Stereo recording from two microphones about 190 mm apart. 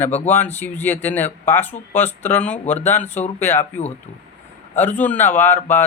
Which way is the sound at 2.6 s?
35° left (ahead or behind).